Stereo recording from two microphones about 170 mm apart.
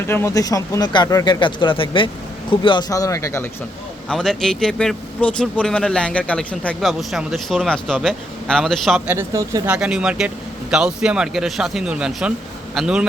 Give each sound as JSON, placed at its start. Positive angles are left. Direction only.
{"t": 0.1, "sound": "speech", "side_deg": 15}
{"t": 4.1, "sound": "speech", "side_deg": 5}
{"t": 9.0, "sound": "speech", "side_deg": -15}
{"t": 9.6, "sound": "speech", "side_deg": -5}